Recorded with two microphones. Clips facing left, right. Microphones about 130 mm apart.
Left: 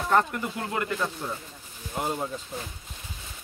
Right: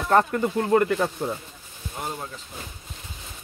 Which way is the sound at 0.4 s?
40° right (ahead or behind).